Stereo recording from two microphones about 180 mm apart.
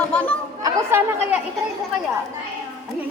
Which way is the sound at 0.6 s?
15° right (ahead or behind).